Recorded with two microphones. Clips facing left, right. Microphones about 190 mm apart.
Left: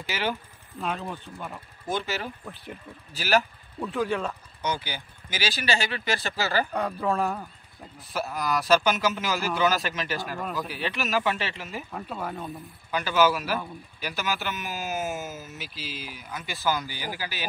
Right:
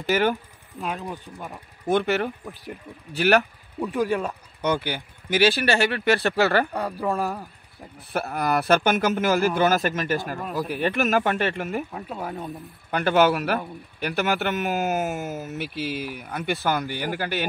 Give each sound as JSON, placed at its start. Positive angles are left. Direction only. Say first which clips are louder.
{"t": 0.1, "sound": "speech", "louder": "right 9 dB", "side_deg": -50}
{"t": 0.9, "sound": "speech", "louder": "right 2 dB", "side_deg": -15}
{"t": 1.9, "sound": "speech", "louder": "right 8 dB", "side_deg": -60}
{"t": 3.8, "sound": "speech", "louder": "right 3 dB", "side_deg": -15}
{"t": 4.6, "sound": "speech", "louder": "right 8 dB", "side_deg": -60}
{"t": 6.8, "sound": "speech", "louder": "right 1 dB", "side_deg": -5}
{"t": 8.1, "sound": "speech", "louder": "right 4 dB", "side_deg": -60}
{"t": 11.9, "sound": "speech", "louder": "right 1 dB", "side_deg": -5}
{"t": 12.9, "sound": "speech", "louder": "right 4 dB", "side_deg": -60}